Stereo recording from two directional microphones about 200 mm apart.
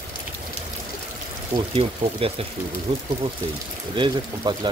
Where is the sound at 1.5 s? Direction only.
30° right (ahead or behind).